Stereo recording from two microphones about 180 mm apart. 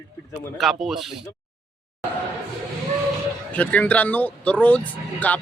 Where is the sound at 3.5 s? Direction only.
10° left (ahead or behind).